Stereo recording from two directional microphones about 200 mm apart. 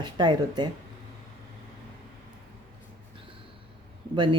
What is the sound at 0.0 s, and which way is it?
Speech, 20° right (ahead or behind).